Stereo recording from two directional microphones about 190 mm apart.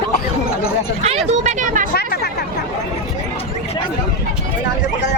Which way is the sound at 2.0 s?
60° left (ahead or behind).